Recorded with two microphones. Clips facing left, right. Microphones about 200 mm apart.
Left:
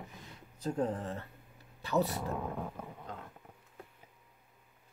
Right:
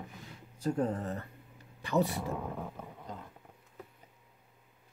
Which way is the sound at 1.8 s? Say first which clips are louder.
Right 1 dB; 15° right (ahead or behind).